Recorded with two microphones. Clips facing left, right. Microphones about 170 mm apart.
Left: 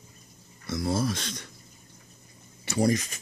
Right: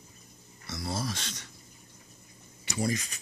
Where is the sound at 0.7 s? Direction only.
50° left (ahead or behind).